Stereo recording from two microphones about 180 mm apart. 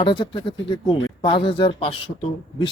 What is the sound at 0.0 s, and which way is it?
Speech, 30° left (ahead or behind).